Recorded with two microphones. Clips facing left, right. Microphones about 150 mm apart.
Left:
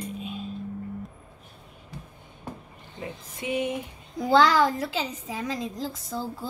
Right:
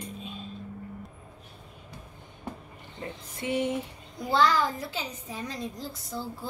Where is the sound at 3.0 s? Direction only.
15° left (ahead or behind).